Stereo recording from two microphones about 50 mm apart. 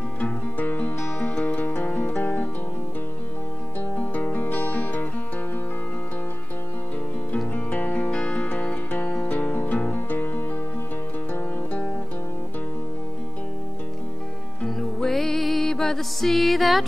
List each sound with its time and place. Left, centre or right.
0.2 s music: left
3.9 s music: left
7.5 s music: left
15.0 s music: centre